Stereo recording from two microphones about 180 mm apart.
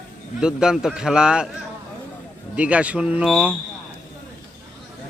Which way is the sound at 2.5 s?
5° right (ahead or behind).